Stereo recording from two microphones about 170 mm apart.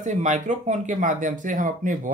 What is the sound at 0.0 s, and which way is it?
Speech, 45° right (ahead or behind).